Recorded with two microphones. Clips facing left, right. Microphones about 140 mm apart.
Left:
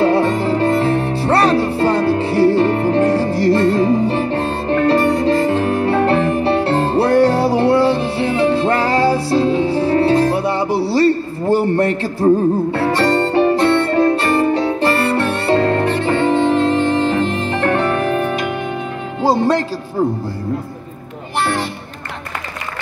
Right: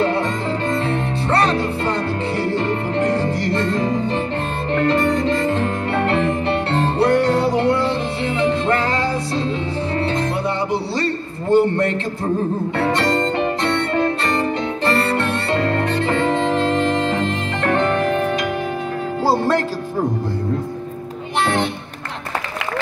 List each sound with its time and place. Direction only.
0.0 s music: 30° left (ahead or behind)
17.6 s music: 5° left (ahead or behind)
19.3 s music: 15° left (ahead or behind)